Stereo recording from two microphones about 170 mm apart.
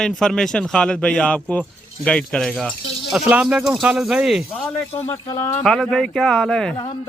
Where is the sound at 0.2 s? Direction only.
5° left (ahead or behind).